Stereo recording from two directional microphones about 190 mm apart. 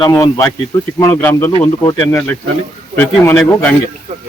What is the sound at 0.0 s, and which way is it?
Speech, 15° left (ahead or behind).